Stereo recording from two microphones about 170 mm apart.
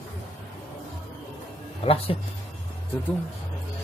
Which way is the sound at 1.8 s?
35° left (ahead or behind).